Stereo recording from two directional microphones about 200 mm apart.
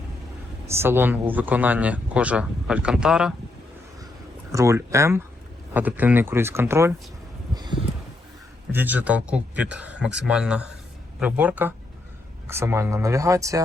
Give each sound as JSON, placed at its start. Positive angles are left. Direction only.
{"t": 0.7, "sound": "speech", "side_deg": -10}
{"t": 4.5, "sound": "speech", "side_deg": -15}
{"t": 7.5, "sound": "a sound", "side_deg": -20}
{"t": 8.7, "sound": "speech", "side_deg": -10}